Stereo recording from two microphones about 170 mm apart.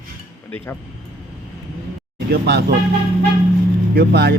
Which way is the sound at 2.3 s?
70° right (ahead or behind).